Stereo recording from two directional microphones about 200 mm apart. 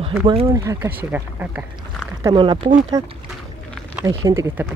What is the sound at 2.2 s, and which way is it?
Speech, 25° right (ahead or behind).